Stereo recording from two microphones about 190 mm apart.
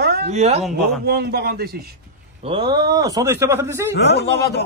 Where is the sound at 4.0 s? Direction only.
60° left (ahead or behind).